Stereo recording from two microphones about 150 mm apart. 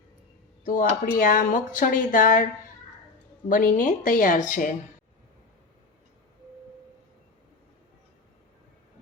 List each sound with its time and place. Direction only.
0.6 s speech: 60° left (ahead or behind)
3.5 s speech: 60° left (ahead or behind)